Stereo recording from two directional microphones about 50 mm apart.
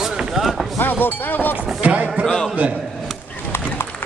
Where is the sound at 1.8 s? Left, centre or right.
Right.